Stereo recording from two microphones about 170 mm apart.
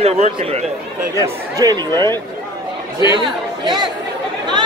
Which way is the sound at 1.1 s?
25° right (ahead or behind).